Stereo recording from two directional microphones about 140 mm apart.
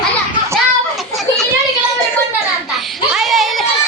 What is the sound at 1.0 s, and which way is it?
Children playing, centre (ahead or behind).